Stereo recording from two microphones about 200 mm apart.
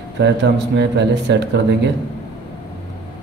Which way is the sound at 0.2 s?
60° right (ahead or behind).